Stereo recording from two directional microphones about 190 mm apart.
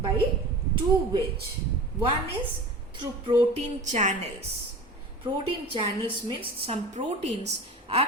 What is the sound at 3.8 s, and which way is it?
Speech, 40° right (ahead or behind).